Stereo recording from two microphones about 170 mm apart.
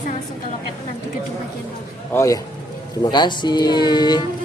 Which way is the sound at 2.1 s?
20° left (ahead or behind).